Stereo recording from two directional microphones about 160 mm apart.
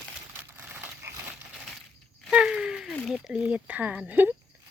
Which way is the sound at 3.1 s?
5° right (ahead or behind).